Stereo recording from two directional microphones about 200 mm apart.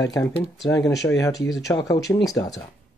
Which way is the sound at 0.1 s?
15° left (ahead or behind).